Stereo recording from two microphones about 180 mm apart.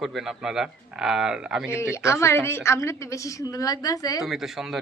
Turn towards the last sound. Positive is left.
turn(degrees=0)  # may be behind; listen again after turning